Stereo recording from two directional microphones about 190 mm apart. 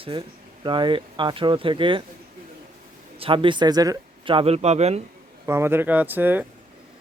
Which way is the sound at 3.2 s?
25° right (ahead or behind).